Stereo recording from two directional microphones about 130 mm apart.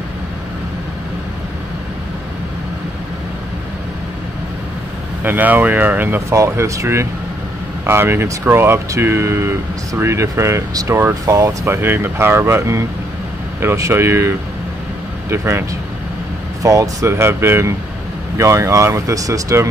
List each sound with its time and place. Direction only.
5.2 s speech: 15° right (ahead or behind)
16.6 s speech: 25° right (ahead or behind)